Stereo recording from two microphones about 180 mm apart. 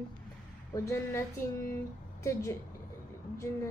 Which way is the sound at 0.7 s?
15° left (ahead or behind).